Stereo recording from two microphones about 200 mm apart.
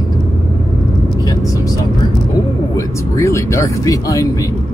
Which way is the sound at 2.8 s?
15° left (ahead or behind).